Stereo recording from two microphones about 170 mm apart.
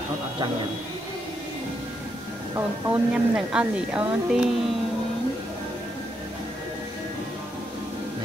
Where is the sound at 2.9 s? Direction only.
5° right (ahead or behind).